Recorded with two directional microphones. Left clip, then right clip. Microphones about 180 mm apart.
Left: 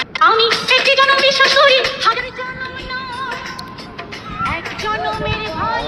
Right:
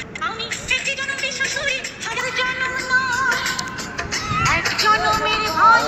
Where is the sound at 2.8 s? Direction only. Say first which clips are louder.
Right 6 dB; 25° left (ahead or behind).